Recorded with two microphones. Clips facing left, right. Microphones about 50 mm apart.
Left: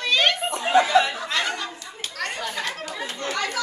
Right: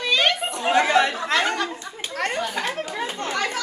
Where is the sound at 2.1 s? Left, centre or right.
Right.